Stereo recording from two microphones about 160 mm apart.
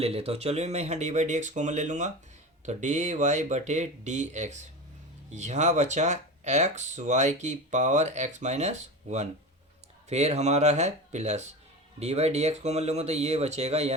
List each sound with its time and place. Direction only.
0.0 s speech: 40° right (ahead or behind)